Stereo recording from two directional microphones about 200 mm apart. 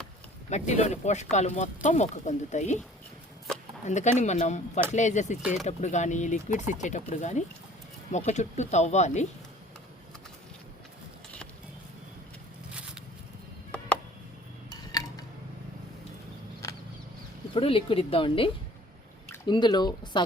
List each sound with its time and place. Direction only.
0.5 s speech: 35° left (ahead or behind)
3.8 s speech: 35° left (ahead or behind)
13.7 s a sound: 5° left (ahead or behind)
14.7 s tick-tock: 20° left (ahead or behind)
17.5 s speech: 25° left (ahead or behind)